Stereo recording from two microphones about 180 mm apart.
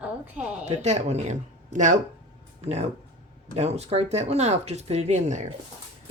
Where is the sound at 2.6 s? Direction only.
35° right (ahead or behind).